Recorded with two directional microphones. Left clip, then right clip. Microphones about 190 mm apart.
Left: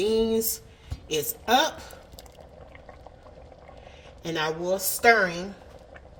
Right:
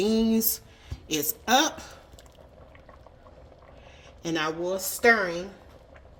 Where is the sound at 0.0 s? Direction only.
45° right (ahead or behind).